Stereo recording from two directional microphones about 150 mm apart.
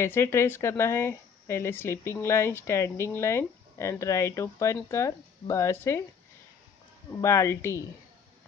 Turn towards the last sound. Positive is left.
turn(degrees=20)  # may be behind; listen again after turning